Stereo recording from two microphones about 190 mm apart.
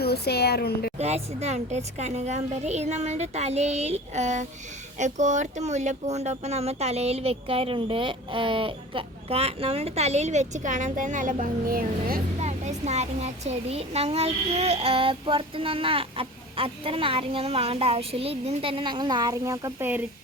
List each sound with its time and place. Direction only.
0.0 s a woman's voice: 55° left (ahead or behind)
0.9 s a child's voice: 35° right (ahead or behind); by 12.5 s 50° right (ahead or behind)
12.5 s a child's voice: 35° right (ahead or behind); by 20.0 s 15° right (ahead or behind)